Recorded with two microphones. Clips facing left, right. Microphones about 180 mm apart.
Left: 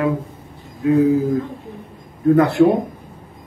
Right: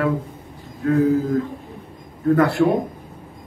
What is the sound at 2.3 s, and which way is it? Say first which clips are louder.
Speech: left 2 dB; 20° left (ahead or behind).